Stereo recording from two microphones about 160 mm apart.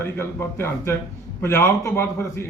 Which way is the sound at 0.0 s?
15° left (ahead or behind).